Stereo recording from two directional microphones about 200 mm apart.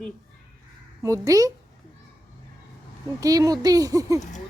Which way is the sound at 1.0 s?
15° right (ahead or behind).